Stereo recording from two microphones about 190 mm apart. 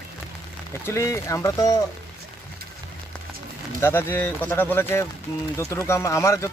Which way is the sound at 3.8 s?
10° left (ahead or behind).